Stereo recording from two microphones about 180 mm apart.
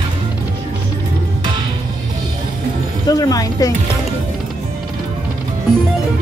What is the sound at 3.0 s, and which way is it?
Speech, 20° left (ahead or behind).